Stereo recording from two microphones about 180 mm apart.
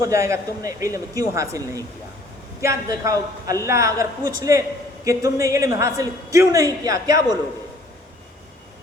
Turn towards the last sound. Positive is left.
turn(degrees=-20)  # may be behind; listen again after turning